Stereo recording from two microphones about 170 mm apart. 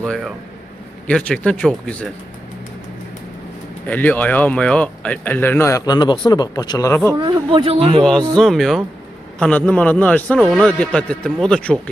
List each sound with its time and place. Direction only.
0.0 s speech: centre (ahead or behind)
3.8 s speech: 10° left (ahead or behind)
7.1 s speech: 25° right (ahead or behind)
8.4 s speech: centre (ahead or behind)